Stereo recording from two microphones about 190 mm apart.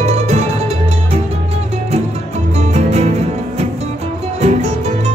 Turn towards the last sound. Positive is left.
turn(degrees=-35)  # may be behind; listen again after turning